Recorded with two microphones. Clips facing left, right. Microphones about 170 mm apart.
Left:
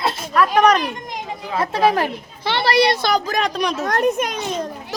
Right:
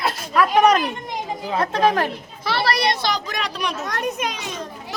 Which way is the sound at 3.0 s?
50° left (ahead or behind).